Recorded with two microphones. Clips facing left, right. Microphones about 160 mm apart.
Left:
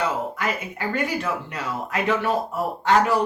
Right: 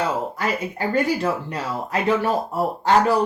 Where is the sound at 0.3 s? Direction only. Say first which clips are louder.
Right 3 dB; 35° right (ahead or behind).